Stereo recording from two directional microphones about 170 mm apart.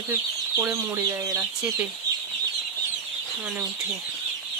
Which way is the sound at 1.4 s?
5° right (ahead or behind).